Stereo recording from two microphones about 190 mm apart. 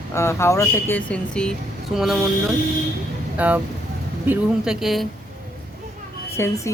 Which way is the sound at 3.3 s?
10° right (ahead or behind).